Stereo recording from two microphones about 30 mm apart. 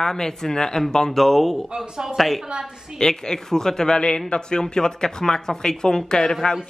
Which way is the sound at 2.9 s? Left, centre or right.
Left.